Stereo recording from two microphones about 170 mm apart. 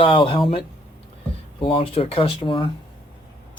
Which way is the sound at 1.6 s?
30° left (ahead or behind).